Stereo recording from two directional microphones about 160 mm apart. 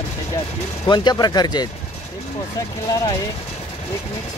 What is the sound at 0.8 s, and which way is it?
Speech, 25° left (ahead or behind).